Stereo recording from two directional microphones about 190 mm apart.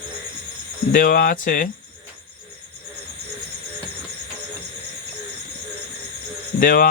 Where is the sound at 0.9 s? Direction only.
50° left (ahead or behind).